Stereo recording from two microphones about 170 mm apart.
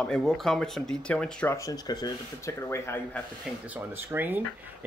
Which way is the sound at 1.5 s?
20° left (ahead or behind).